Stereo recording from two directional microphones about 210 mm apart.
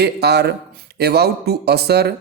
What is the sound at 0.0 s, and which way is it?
Speech, 50° right (ahead or behind).